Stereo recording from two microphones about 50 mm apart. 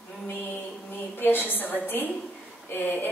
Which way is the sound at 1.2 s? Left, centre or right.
Left.